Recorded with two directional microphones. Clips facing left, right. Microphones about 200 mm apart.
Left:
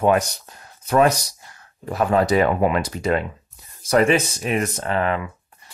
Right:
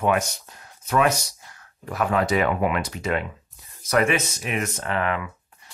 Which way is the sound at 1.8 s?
30° left (ahead or behind).